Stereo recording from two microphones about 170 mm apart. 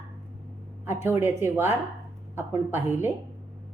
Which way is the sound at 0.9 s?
15° right (ahead or behind).